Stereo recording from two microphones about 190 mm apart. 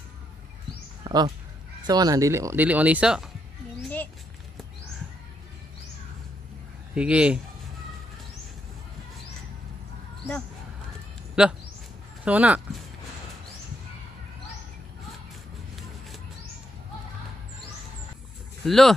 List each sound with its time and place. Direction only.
1.0 s speech: 20° right (ahead or behind); by 3.3 s 5° right (ahead or behind)
7.0 s speech: 5° right (ahead or behind)
11.4 s speech: 5° right (ahead or behind)
18.7 s speech: centre (ahead or behind)